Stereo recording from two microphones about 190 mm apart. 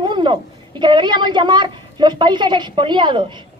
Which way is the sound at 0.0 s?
25° right (ahead or behind).